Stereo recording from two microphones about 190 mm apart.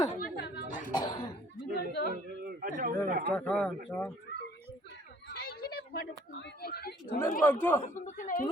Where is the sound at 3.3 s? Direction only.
5° left (ahead or behind).